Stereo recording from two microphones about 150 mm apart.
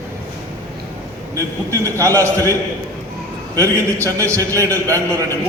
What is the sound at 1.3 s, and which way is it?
A man's voice, 20° right (ahead or behind).